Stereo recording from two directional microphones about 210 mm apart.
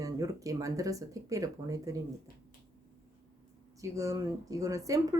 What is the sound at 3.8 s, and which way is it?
A woman's voice, 15° right (ahead or behind).